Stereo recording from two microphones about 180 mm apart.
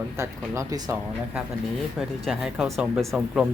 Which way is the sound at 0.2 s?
15° right (ahead or behind).